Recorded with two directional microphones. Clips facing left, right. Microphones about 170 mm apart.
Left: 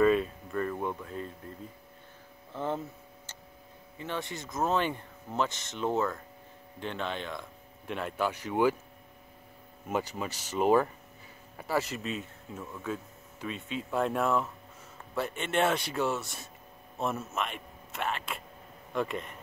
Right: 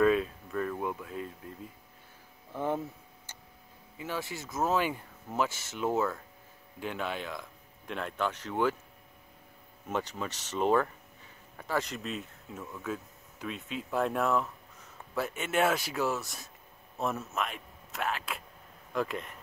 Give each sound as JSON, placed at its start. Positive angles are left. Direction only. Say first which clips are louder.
{"t": 0.0, "sound": "a sound", "louder": "left 1 dB", "side_deg": 0}
{"t": 2.5, "sound": "speech", "louder": "right 1 dB", "side_deg": -10}
{"t": 4.0, "sound": "speech", "louder": "even", "side_deg": -5}
{"t": 9.8, "sound": "speech", "louder": "left 2 dB", "side_deg": 10}